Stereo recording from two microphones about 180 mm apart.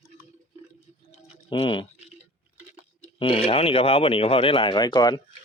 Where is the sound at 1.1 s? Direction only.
30° left (ahead or behind).